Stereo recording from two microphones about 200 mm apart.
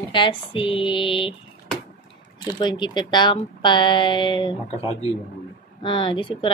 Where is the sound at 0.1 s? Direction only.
25° left (ahead or behind).